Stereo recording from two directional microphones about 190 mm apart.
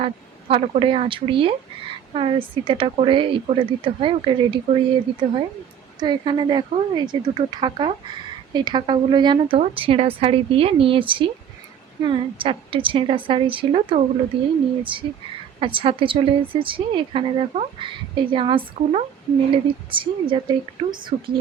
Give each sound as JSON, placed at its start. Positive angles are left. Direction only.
{"t": 0.0, "sound": "a woman's voice", "side_deg": -30}
{"t": 6.0, "sound": "a woman's voice", "side_deg": -25}